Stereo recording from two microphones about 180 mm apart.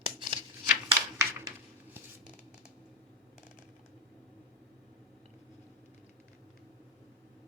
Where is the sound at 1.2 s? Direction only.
15° right (ahead or behind).